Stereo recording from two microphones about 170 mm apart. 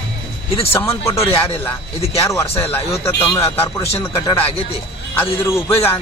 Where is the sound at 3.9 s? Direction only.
30° left (ahead or behind).